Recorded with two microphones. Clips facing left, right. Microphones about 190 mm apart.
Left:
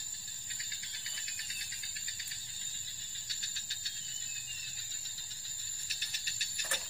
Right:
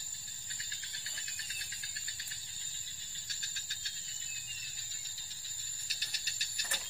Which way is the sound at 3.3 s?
50° right (ahead or behind).